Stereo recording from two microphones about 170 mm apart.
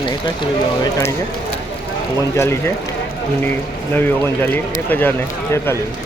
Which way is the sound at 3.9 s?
10° left (ahead or behind).